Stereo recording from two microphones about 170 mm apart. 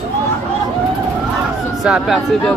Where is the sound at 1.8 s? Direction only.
Centre (ahead or behind).